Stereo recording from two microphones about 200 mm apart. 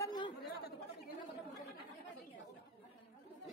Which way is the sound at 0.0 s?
20° left (ahead or behind).